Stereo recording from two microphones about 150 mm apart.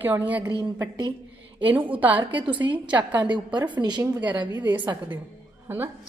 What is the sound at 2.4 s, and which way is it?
Speech, 10° right (ahead or behind).